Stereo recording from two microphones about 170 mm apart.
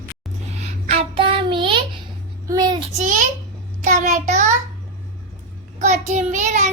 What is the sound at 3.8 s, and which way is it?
Child singing, 45° right (ahead or behind).